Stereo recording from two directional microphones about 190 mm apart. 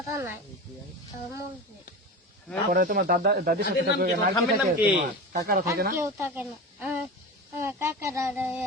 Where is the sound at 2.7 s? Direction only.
50° right (ahead or behind).